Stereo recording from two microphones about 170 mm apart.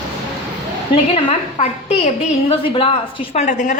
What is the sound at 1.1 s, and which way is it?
A woman's voice, 35° left (ahead or behind).